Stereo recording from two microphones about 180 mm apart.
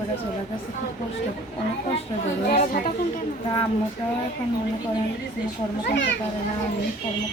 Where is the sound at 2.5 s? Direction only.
55° left (ahead or behind).